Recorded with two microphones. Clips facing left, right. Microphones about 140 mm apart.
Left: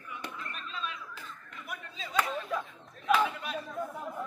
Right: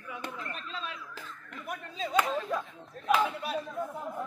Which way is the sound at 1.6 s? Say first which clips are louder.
Right 7 dB; 40° right (ahead or behind).